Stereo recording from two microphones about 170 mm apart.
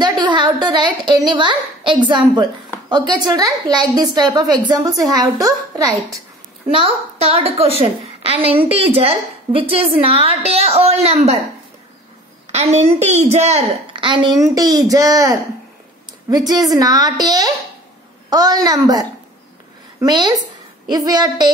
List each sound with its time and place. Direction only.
0.0 s a sound: 25° right (ahead or behind)
2.0 s a woman's voice: 25° right (ahead or behind)
6.7 s a woman's voice: 35° right (ahead or behind)
12.4 s a woman's voice: 40° right (ahead or behind); by 21.5 s 25° right (ahead or behind)